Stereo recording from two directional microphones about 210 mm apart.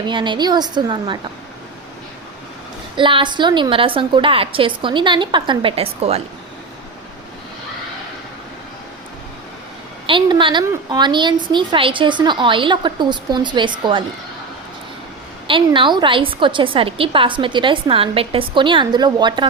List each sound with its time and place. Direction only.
0.1 s a woman's voice: 20° right (ahead or behind)
2.9 s a woman's voice: 25° right (ahead or behind)
10.1 s a woman's voice: 25° right (ahead or behind)
15.4 s a woman's voice: 25° right (ahead or behind)